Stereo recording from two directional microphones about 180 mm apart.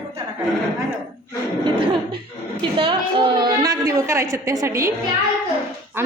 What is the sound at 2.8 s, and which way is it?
A woman's voice, 30° right (ahead or behind).